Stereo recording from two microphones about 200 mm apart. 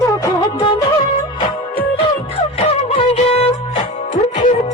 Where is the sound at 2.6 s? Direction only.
35° left (ahead or behind).